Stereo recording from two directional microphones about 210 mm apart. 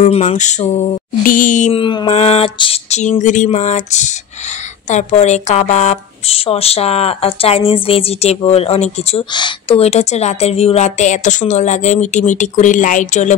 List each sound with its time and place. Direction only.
0.0 s speech: 30° left (ahead or behind)
1.7 s speech: 25° left (ahead or behind)